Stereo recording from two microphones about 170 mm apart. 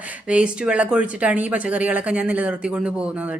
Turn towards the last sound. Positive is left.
turn(degrees=-10)  # may be behind; listen again after turning